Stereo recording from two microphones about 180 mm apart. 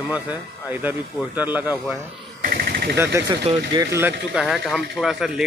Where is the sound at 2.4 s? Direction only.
55° right (ahead or behind).